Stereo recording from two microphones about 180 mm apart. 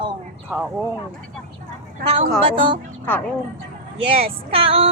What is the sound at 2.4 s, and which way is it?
Speech, 30° right (ahead or behind).